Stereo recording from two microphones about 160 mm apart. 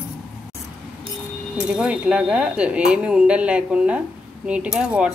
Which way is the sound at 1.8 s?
5° right (ahead or behind).